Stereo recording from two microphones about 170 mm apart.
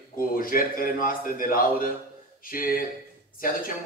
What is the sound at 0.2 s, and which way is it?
A man's voice, 55° left (ahead or behind).